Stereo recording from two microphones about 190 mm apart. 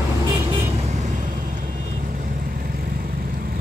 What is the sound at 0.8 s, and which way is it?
Vehicle, 40° right (ahead or behind).